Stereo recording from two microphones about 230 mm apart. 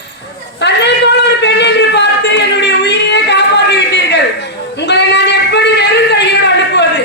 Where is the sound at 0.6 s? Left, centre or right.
Left.